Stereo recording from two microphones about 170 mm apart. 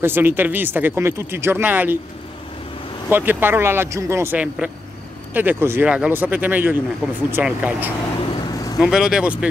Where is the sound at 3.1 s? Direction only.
10° right (ahead or behind).